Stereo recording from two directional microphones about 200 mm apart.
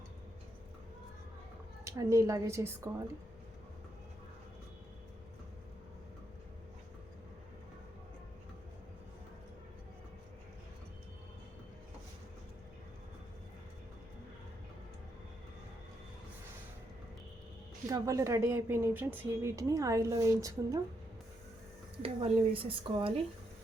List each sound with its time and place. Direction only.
1.8 s speech: 15° right (ahead or behind)
17.8 s speech: 15° right (ahead or behind)
22.0 s a woman's voice: 30° right (ahead or behind)